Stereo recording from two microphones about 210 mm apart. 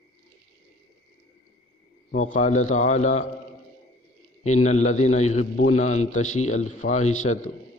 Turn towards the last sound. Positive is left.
turn(degrees=35)  # may be behind; listen again after turning